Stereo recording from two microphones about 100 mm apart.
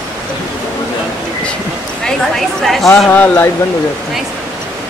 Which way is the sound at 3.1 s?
20° left (ahead or behind).